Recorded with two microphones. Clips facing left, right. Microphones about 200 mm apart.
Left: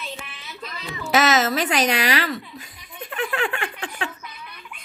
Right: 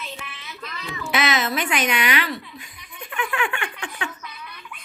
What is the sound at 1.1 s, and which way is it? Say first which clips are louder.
Giggle: left 4 dB; 40° left (ahead or behind).